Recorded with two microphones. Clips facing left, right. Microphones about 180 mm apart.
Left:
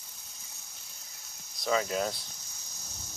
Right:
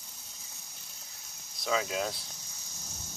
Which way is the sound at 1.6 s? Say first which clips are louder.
Left 2 dB; centre (ahead or behind).